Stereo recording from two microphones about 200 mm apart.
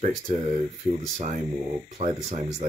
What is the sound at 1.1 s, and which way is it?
Speech, 40° right (ahead or behind).